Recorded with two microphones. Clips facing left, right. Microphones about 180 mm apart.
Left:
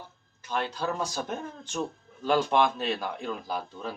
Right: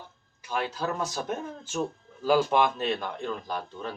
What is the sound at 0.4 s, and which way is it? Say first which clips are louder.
Speech: even; 5° right (ahead or behind).